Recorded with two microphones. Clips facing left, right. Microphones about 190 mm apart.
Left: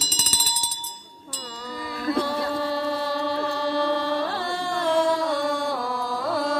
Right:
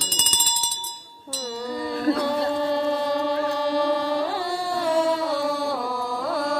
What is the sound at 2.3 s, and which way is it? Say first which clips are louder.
Music: right 3 dB; 20° right (ahead or behind).